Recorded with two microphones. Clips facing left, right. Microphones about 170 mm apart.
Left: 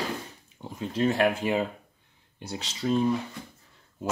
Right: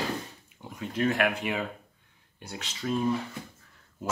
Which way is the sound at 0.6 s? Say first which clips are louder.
Left 2 dB; 30° left (ahead or behind).